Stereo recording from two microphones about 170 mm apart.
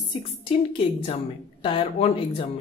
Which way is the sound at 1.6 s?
30° left (ahead or behind).